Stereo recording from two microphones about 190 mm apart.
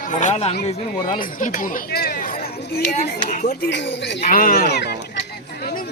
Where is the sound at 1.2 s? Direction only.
45° left (ahead or behind).